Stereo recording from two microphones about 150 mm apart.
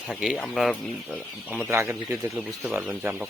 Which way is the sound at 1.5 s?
10° right (ahead or behind).